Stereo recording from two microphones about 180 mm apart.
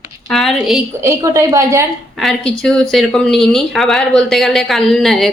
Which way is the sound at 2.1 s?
Centre (ahead or behind).